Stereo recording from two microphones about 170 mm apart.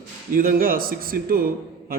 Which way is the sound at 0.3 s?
55° right (ahead or behind).